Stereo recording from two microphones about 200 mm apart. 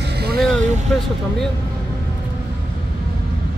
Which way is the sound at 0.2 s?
50° right (ahead or behind).